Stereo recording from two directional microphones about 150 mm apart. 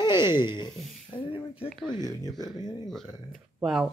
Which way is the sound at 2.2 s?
Centre (ahead or behind).